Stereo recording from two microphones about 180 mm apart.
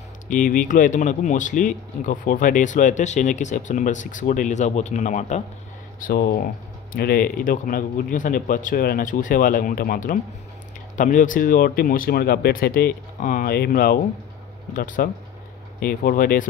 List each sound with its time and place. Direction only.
0.3 s speech: 45° left (ahead or behind)
5.9 s speech: 55° left (ahead or behind)